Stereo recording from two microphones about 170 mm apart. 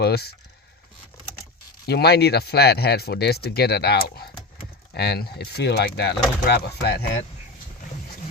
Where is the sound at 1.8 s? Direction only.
70° left (ahead or behind).